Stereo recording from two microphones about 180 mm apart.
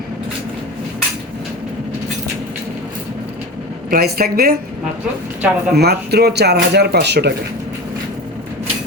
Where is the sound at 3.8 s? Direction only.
55° right (ahead or behind).